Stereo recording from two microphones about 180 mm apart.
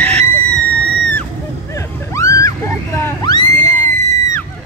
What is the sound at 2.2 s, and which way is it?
Dog, 20° left (ahead or behind).